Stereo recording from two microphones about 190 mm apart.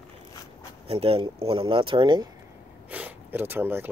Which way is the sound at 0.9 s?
30° right (ahead or behind).